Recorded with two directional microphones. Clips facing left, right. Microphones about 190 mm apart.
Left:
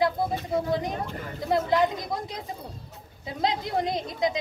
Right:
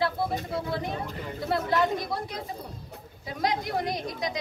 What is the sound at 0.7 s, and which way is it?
A woman's voice, 15° left (ahead or behind).